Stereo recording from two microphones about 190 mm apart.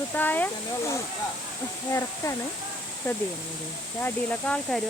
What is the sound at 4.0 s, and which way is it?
Speech, 5° left (ahead or behind).